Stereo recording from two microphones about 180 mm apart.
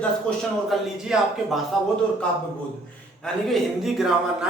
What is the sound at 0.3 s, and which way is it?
A man's voice, centre (ahead or behind).